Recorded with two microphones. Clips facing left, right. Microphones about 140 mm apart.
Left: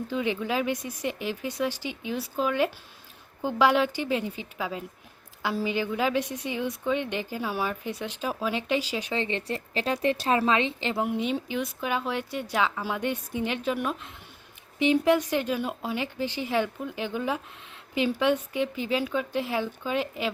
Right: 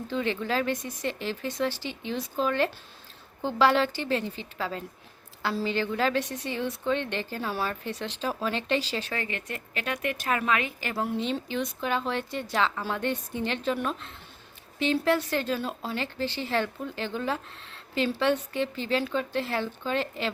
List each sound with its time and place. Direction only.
0.1 s a woman's voice: 10° left (ahead or behind)